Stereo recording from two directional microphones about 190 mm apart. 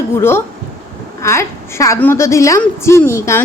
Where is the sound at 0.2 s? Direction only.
10° left (ahead or behind).